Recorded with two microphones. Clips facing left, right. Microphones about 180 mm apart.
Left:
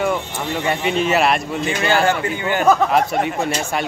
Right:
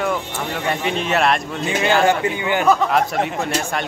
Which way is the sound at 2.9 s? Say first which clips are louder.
Left 1 dB; centre (ahead or behind).